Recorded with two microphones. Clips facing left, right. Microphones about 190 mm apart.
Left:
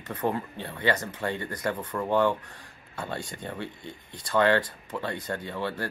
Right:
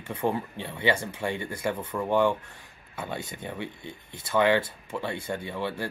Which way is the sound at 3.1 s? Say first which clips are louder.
Even; 20° right (ahead or behind).